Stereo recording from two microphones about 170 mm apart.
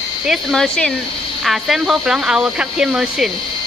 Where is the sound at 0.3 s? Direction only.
Centre (ahead or behind).